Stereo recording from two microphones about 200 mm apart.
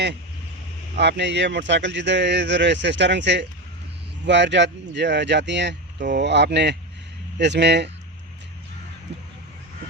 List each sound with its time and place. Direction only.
0.9 s speech: 60° right (ahead or behind)